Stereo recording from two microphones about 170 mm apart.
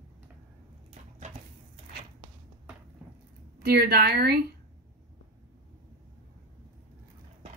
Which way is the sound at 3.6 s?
70° right (ahead or behind).